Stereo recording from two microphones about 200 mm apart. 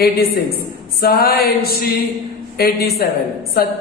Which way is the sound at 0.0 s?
50° left (ahead or behind).